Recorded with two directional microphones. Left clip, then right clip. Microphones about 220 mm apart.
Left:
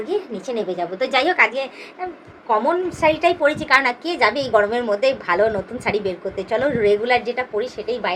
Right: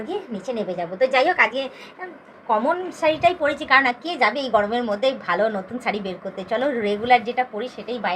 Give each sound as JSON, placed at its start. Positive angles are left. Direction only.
{"t": 0.1, "sound": "a woman's voice", "side_deg": 20}